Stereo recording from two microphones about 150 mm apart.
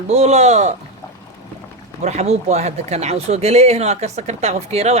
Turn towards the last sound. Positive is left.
turn(degrees=-45)  # may be behind; listen again after turning